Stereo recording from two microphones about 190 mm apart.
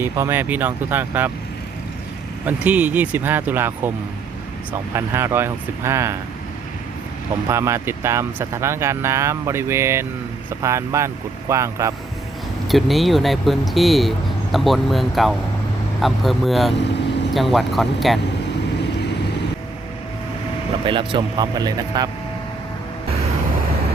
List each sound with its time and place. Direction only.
0.0 s speech: 10° right (ahead or behind)
2.4 s speech: 10° right (ahead or behind)
4.9 s speech: 15° right (ahead or behind)
7.4 s speech: 15° right (ahead or behind)
12.6 s speech: centre (ahead or behind)
20.8 s speech: 25° right (ahead or behind)